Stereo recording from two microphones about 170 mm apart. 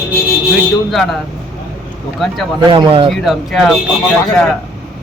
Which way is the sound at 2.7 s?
30° right (ahead or behind).